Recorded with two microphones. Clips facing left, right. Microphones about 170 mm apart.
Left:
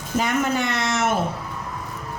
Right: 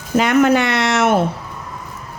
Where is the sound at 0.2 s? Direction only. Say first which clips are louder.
Right 9 dB; 75° right (ahead or behind).